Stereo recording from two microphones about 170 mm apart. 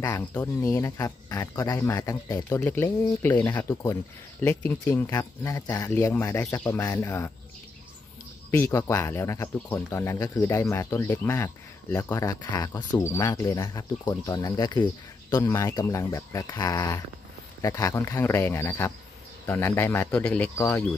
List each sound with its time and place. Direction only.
0.3 s speech: 15° left (ahead or behind)
8.5 s speech: 15° left (ahead or behind)